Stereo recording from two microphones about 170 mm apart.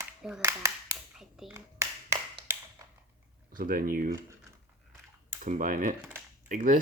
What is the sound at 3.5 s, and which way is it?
Speech, 55° right (ahead or behind).